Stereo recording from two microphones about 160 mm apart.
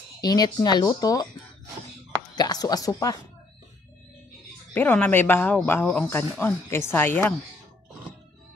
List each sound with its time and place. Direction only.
0.2 s speech: 25° left (ahead or behind)
2.3 s speech: 25° left (ahead or behind)
4.7 s speech: 10° left (ahead or behind)